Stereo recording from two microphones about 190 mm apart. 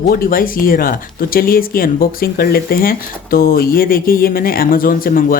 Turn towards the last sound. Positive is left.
turn(degrees=50)  # may be behind; listen again after turning